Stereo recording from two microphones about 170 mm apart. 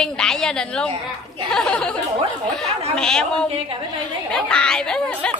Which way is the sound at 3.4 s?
35° right (ahead or behind).